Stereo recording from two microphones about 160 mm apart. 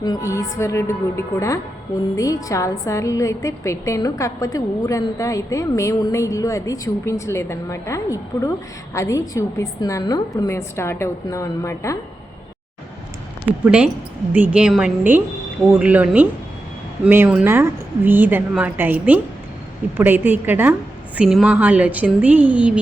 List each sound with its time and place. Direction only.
0.0 s a woman's voice: 20° left (ahead or behind)
13.7 s a woman's voice: 5° right (ahead or behind)